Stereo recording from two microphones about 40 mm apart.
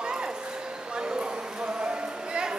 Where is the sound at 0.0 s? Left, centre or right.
Right.